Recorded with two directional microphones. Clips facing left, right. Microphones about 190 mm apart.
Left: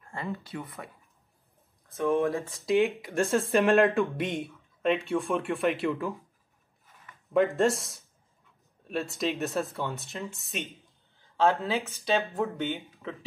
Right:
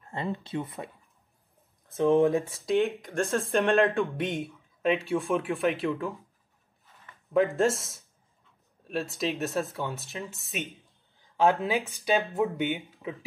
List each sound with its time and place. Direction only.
0.0 s speech: 20° right (ahead or behind)
2.1 s speech: 15° right (ahead or behind)
2.5 s speech: centre (ahead or behind)
3.1 s speech: 10° left (ahead or behind)
3.6 s speech: centre (ahead or behind)
7.3 s speech: centre (ahead or behind)
11.3 s speech: 15° right (ahead or behind)